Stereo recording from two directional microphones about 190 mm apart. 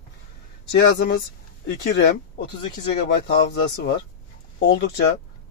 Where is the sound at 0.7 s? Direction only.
60° left (ahead or behind).